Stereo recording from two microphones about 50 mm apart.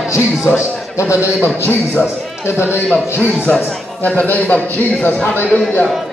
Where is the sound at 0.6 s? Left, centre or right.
Left.